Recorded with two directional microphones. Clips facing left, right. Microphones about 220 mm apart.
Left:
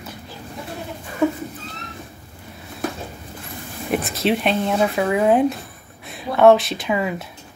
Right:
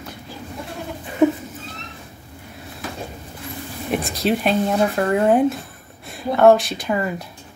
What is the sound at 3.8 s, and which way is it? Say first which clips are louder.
A woman's voice: left 1 dB; centre (ahead or behind).